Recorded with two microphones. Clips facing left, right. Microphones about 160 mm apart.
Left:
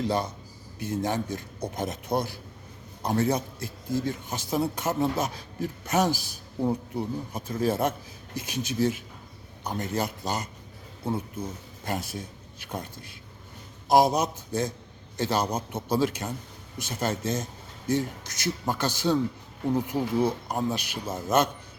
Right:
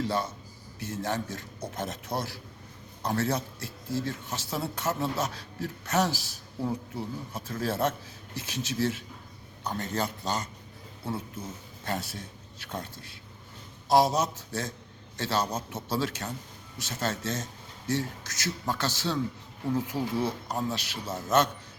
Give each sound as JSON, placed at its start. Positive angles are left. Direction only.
{"t": 0.0, "sound": "speech", "side_deg": 15}
{"t": 11.9, "sound": "speech", "side_deg": 15}